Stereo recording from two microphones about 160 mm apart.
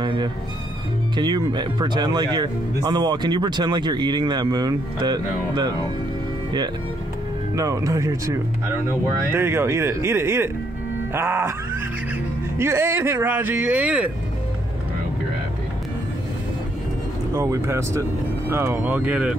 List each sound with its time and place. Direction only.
0.0 s speech: 30° right (ahead or behind)
7.5 s speech: 20° right (ahead or behind)
12.5 s speech: 15° right (ahead or behind)
17.3 s speech: 20° right (ahead or behind)